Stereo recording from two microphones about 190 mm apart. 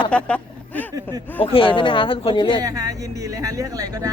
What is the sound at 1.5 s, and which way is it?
Speech, 30° left (ahead or behind).